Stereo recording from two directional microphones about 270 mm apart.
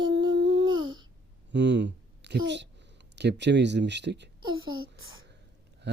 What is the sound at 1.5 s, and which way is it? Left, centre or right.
Speech, right.